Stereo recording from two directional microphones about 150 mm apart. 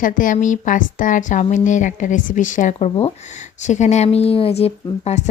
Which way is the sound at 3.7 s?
50° left (ahead or behind).